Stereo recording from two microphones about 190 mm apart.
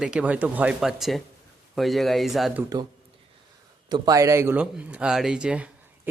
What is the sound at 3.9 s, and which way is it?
Speech, 20° right (ahead or behind).